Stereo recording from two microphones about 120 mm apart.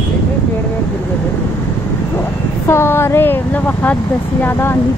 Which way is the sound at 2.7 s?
20° left (ahead or behind).